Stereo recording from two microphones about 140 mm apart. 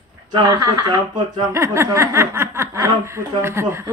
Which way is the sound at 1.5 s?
20° right (ahead or behind).